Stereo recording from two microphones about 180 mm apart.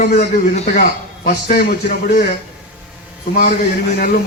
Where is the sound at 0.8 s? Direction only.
60° left (ahead or behind).